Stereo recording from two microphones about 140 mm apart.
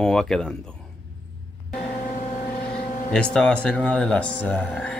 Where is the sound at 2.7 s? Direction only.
10° left (ahead or behind).